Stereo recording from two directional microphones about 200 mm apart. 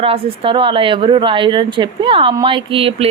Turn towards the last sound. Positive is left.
turn(degrees=-30)  # may be behind; listen again after turning